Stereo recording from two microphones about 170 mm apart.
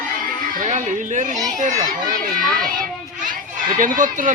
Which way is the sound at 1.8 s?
20° right (ahead or behind).